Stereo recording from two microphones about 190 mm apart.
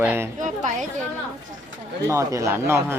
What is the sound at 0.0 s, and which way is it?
Speech, 10° right (ahead or behind).